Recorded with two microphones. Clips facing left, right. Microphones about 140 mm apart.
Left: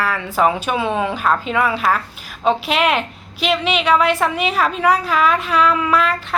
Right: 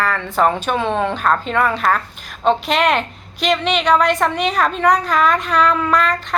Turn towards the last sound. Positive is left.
turn(degrees=5)  # may be behind; listen again after turning